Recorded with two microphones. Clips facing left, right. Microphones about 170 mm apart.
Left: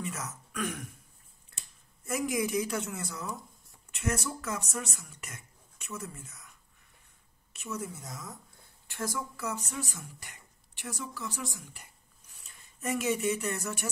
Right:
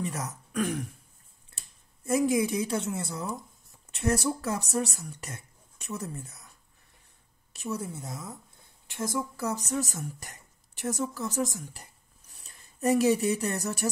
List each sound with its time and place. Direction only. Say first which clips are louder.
0.0 s speech: right 4 dB; 35° right (ahead or behind)
2.0 s a woman's voice: right 6 dB; 30° right (ahead or behind)
7.5 s a woman's voice: right 4 dB; 35° right (ahead or behind)
9.4 s a woman's voice: right 6 dB; 35° right (ahead or behind)